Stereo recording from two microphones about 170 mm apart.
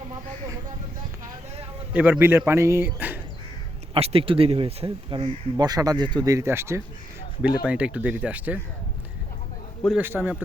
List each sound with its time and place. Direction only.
1.9 s speech: 10° right (ahead or behind)
3.9 s speech: 35° right (ahead or behind)
5.5 s speech: 25° right (ahead or behind)
10.0 s speech: 10° right (ahead or behind)